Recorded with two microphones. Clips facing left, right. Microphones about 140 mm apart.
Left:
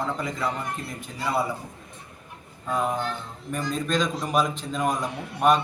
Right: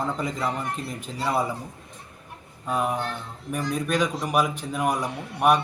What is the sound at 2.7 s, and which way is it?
A man's voice, 10° right (ahead or behind).